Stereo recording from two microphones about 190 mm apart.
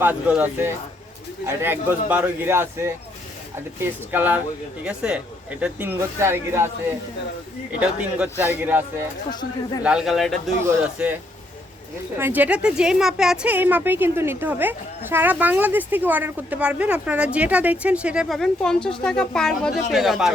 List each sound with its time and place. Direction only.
0.0 s a woman's voice: 10° right (ahead or behind)
4.1 s a woman's voice: 10° right (ahead or behind)
7.8 s a woman's voice: 5° right (ahead or behind)
9.8 s a woman's voice: 5° right (ahead or behind)